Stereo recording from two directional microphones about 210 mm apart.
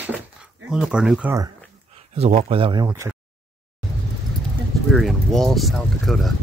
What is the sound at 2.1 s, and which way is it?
Speech, 30° right (ahead or behind).